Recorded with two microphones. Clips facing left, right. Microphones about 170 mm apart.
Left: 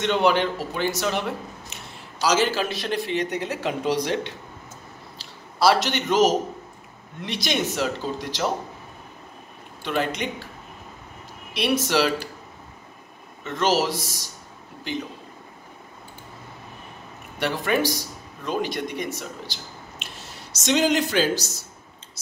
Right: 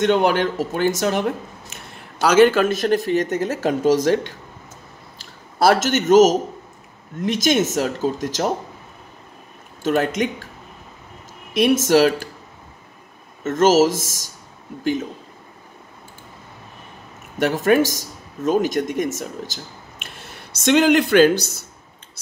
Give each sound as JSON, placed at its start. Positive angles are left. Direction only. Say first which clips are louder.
{"t": 0.0, "sound": "a man's voice", "louder": "right 4 dB", "side_deg": -50}
{"t": 9.8, "sound": "speech", "louder": "right 6 dB", "side_deg": -45}
{"t": 11.5, "sound": "speech", "louder": "right 7 dB", "side_deg": -45}
{"t": 13.4, "sound": "speech", "louder": "right 8 dB", "side_deg": -45}
{"t": 17.4, "sound": "a man's voice", "louder": "right 7 dB", "side_deg": -45}